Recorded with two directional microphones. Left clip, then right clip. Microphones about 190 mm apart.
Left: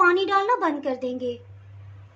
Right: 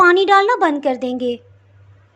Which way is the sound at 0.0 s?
40° right (ahead or behind).